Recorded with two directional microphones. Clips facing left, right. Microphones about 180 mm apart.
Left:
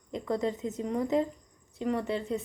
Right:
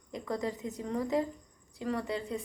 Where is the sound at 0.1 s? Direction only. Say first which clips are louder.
Left 4 dB; 20° left (ahead or behind).